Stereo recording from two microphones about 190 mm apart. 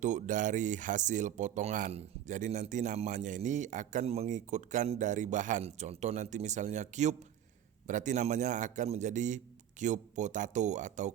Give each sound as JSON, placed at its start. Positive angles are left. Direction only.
{"t": 0.0, "sound": "speech", "side_deg": -40}